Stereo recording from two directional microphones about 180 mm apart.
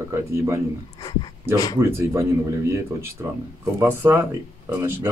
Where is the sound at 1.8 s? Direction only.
15° right (ahead or behind).